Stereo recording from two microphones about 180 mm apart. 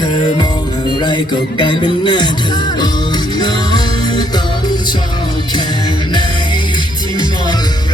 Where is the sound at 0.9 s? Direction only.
25° left (ahead or behind).